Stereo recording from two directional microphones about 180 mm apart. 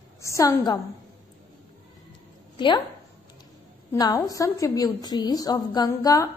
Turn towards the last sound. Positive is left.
turn(degrees=20)  # may be behind; listen again after turning